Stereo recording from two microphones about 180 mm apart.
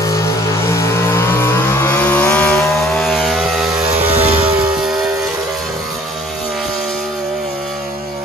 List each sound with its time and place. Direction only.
0.7 s vehicle: 15° left (ahead or behind)
4.1 s vehicle: 35° right (ahead or behind)